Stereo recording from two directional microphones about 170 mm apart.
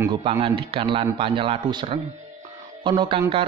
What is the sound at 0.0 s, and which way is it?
Speech, 30° right (ahead or behind).